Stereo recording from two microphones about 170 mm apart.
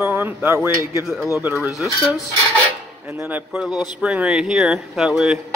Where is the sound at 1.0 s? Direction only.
Centre (ahead or behind).